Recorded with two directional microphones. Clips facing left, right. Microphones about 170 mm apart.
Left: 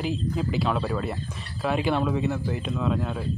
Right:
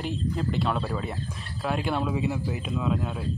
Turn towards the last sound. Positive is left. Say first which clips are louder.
# left 1 dB
turn(degrees=-5)  # may be behind; listen again after turning